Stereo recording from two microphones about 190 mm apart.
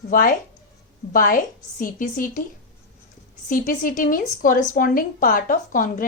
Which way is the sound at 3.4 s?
45° left (ahead or behind).